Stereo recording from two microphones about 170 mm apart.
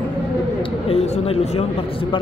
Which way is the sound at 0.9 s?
35° left (ahead or behind).